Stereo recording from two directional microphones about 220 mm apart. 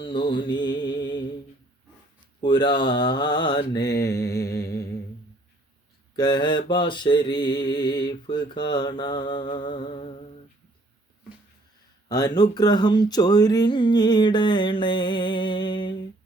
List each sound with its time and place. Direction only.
0.0 s mantra: 20° left (ahead or behind)
2.4 s mantra: 20° left (ahead or behind)
6.1 s mantra: 20° left (ahead or behind)
12.0 s mantra: 20° left (ahead or behind)